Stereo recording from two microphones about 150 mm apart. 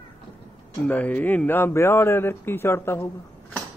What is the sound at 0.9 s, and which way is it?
A man's voice, 10° left (ahead or behind).